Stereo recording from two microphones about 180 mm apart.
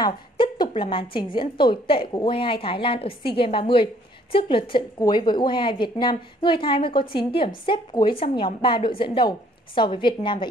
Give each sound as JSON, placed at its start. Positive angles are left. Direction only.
{"t": 0.0, "sound": "a woman's voice", "side_deg": 25}